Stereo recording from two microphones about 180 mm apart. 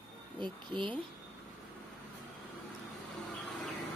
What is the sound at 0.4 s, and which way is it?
Speech, 25° right (ahead or behind).